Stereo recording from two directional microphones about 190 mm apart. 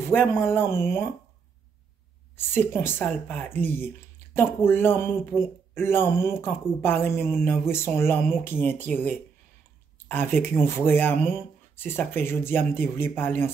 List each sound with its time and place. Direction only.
0.0 s speech: 10° left (ahead or behind)
2.3 s speech: 10° left (ahead or behind)